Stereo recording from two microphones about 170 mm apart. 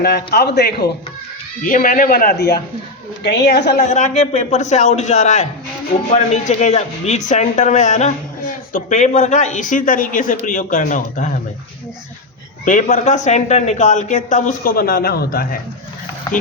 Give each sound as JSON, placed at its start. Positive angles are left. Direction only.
{"t": 0.0, "sound": "a man's voice", "side_deg": 70}
{"t": 1.6, "sound": "speech", "side_deg": 55}
{"t": 3.2, "sound": "a woman's voice", "side_deg": 80}
{"t": 3.8, "sound": "a woman's voice", "side_deg": 45}
{"t": 12.6, "sound": "a woman's voice", "side_deg": 45}